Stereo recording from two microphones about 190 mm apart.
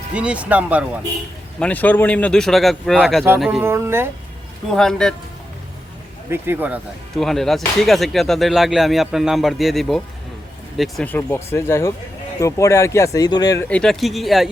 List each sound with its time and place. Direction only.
0.1 s speech: 5° right (ahead or behind)
1.5 s speech: 5° left (ahead or behind); by 4.1 s 15° right (ahead or behind)
4.7 s speech: centre (ahead or behind)
6.3 s speech: 10° right (ahead or behind)
7.2 s speech: centre (ahead or behind); by 13.7 s 20° left (ahead or behind)
13.7 s speech: 5° left (ahead or behind)